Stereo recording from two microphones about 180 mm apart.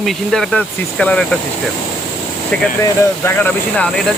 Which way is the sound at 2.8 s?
10° left (ahead or behind).